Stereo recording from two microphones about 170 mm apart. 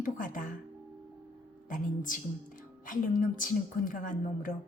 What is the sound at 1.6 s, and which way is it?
A woman's voice, 50° left (ahead or behind).